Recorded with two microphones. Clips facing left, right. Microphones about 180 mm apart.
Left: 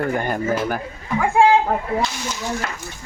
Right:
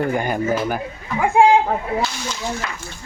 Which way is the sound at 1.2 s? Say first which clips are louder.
Right 1 dB; 20° right (ahead or behind).